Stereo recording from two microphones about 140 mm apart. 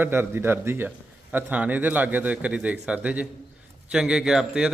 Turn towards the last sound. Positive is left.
turn(degrees=-5)  # may be behind; listen again after turning